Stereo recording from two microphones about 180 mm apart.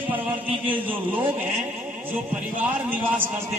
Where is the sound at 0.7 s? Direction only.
10° right (ahead or behind).